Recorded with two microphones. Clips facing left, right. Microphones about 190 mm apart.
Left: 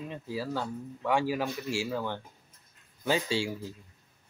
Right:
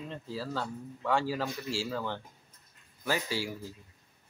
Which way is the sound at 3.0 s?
25° left (ahead or behind).